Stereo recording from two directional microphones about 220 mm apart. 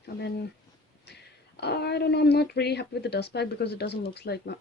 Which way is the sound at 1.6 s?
50° left (ahead or behind).